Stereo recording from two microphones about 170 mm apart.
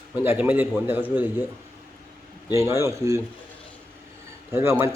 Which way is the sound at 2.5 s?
15° right (ahead or behind).